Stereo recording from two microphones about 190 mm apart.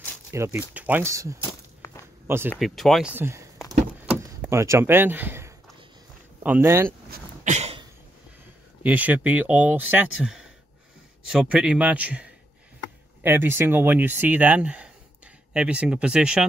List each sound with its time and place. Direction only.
0.3 s speech: 15° right (ahead or behind)
1.8 s a sound: 15° left (ahead or behind)
2.2 s speech: 10° right (ahead or behind)
2.5 s speech: centre (ahead or behind)
4.0 s door: 10° right (ahead or behind)
6.4 s speech: 10° right (ahead or behind)
7.1 s a sound: 40° right (ahead or behind)
8.8 s speech: 10° right (ahead or behind)